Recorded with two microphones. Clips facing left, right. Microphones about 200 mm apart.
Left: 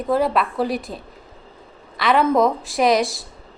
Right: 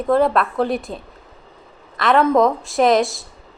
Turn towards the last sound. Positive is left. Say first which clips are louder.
# right 2 dB
turn(degrees=0)  # may be behind; listen again after turning